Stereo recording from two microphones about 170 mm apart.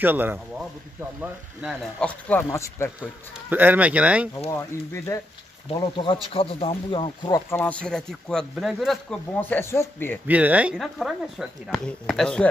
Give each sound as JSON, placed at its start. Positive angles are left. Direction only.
{"t": 0.0, "sound": "speech", "side_deg": -10}
{"t": 2.0, "sound": "speech", "side_deg": 10}
{"t": 3.4, "sound": "speech", "side_deg": -10}
{"t": 4.5, "sound": "speech", "side_deg": 15}
{"t": 6.3, "sound": "speech", "side_deg": 35}
{"t": 9.4, "sound": "speech", "side_deg": 15}
{"t": 10.2, "sound": "speech", "side_deg": -10}